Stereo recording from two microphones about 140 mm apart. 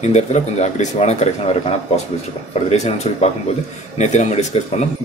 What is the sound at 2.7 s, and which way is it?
Speech, 50° left (ahead or behind).